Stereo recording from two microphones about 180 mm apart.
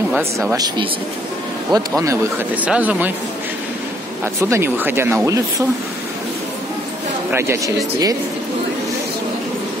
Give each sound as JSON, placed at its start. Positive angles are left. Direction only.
{"t": 0.5, "sound": "speech", "side_deg": -20}
{"t": 4.2, "sound": "speech", "side_deg": -15}
{"t": 7.2, "sound": "speech", "side_deg": -15}